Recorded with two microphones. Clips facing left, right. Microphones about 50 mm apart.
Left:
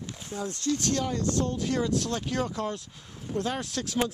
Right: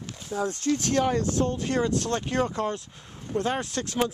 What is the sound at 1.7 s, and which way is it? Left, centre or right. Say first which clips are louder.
Speech: right 2 dB; right.